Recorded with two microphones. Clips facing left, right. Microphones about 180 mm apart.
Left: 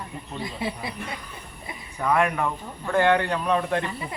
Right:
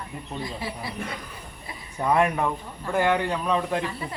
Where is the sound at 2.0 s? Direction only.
20° right (ahead or behind).